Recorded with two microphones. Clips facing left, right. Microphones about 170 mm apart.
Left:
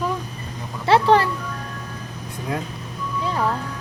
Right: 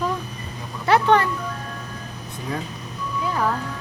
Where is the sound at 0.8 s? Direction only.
30° left (ahead or behind).